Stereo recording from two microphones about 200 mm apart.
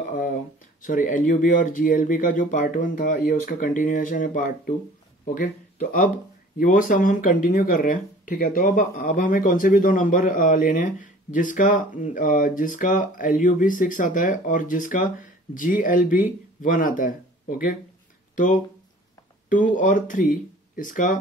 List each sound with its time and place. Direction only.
0.8 s speech: 40° left (ahead or behind)